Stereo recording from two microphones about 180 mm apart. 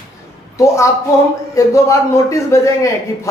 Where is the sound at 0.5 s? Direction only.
15° left (ahead or behind).